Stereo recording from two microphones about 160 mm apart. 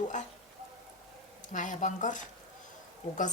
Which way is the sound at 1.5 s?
50° left (ahead or behind).